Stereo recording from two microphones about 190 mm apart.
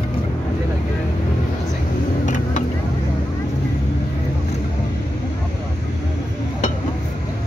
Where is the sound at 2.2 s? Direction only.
40° left (ahead or behind).